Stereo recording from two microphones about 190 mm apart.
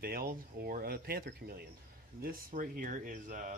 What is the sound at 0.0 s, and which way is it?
Speech, 50° right (ahead or behind).